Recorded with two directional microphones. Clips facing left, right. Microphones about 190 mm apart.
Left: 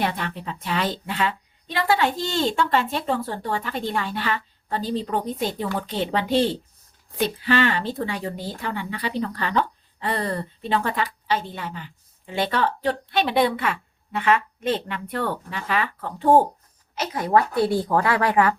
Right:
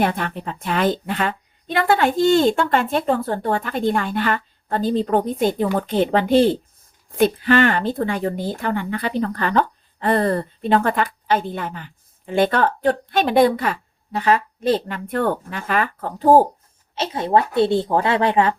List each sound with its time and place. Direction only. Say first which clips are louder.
0.0 s a woman's voice: right 5 dB; 50° right (ahead or behind)
16.9 s speech: right 2 dB; 25° right (ahead or behind)